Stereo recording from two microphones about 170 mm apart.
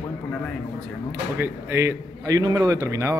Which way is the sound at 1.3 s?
15° right (ahead or behind).